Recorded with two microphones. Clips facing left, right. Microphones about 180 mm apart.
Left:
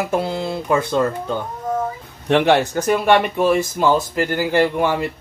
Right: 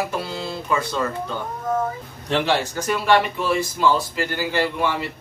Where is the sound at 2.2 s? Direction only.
60° left (ahead or behind).